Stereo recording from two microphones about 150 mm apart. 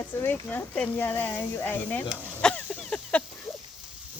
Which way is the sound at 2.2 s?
10° left (ahead or behind).